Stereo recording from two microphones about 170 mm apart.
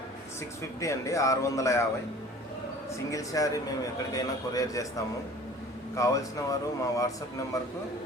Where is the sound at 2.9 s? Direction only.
20° left (ahead or behind).